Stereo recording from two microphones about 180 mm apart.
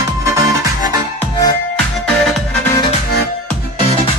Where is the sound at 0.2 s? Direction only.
15° right (ahead or behind).